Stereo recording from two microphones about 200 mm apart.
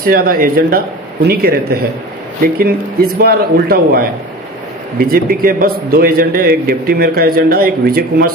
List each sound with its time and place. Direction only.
0.0 s a man's voice: 45° right (ahead or behind)